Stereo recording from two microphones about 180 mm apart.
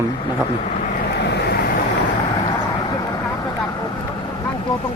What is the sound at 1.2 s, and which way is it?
Vehicle, 65° left (ahead or behind).